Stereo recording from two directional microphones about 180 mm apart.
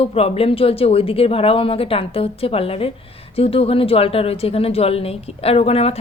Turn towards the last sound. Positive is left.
turn(degrees=35)  # may be behind; listen again after turning